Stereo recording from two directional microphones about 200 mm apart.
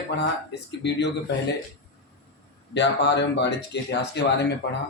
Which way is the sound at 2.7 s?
60° left (ahead or behind).